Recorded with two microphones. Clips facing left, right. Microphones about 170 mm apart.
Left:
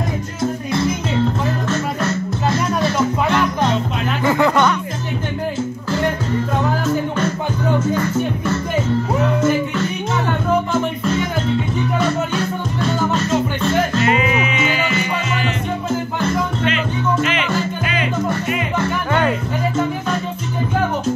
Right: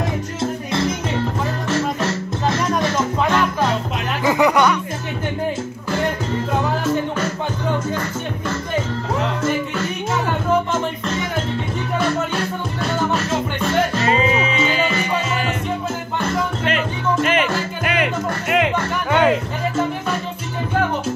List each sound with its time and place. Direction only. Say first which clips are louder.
0.4 s music: left 3 dB; 25° right (ahead or behind)
4.2 s music: even; 15° right (ahead or behind)
14.0 s music: even; 30° right (ahead or behind)
16.6 s music: left 1 dB; 50° right (ahead or behind)
17.9 s music: left 1 dB; 70° right (ahead or behind)